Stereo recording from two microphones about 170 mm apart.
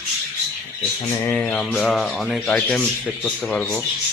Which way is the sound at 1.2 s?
10° left (ahead or behind).